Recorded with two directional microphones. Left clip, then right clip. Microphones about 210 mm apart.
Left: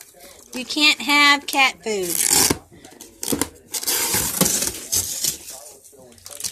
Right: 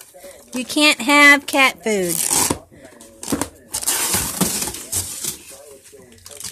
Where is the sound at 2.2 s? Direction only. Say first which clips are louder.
Left 2 dB; centre (ahead or behind).